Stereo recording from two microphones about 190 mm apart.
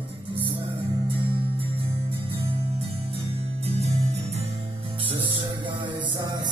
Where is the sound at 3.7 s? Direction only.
35° right (ahead or behind).